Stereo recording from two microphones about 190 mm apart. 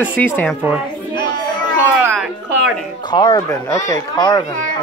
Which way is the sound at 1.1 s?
25° left (ahead or behind).